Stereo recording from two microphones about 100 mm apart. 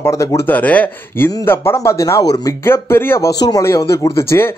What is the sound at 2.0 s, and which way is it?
Speech, 35° left (ahead or behind).